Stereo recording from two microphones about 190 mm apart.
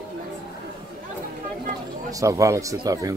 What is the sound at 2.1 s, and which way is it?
Speech, 15° right (ahead or behind).